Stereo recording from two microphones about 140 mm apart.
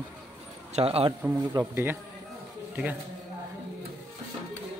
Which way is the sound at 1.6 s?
30° right (ahead or behind).